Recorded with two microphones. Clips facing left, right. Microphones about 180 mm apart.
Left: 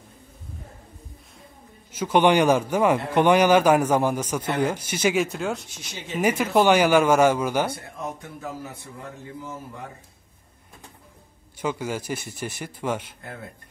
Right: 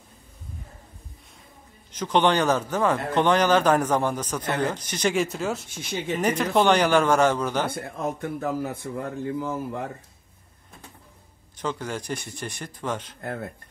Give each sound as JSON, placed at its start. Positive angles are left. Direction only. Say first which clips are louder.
{"t": 1.9, "sound": "a man's voice", "louder": "left 3 dB", "side_deg": 10}
{"t": 5.9, "sound": "a man's voice", "louder": "right 10 dB", "side_deg": -55}
{"t": 6.1, "sound": "a man's voice", "louder": "left 2 dB", "side_deg": 5}
{"t": 7.7, "sound": "a man's voice", "louder": "right 4 dB", "side_deg": -55}
{"t": 11.6, "sound": "a man's voice", "louder": "left 2 dB", "side_deg": 10}
{"t": 13.2, "sound": "speech", "louder": "right 6 dB", "side_deg": -50}